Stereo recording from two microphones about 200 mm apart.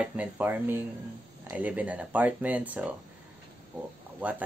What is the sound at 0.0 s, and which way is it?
Speech, 5° right (ahead or behind).